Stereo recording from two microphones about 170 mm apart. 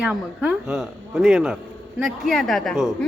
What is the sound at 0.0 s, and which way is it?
Speech, 5° right (ahead or behind).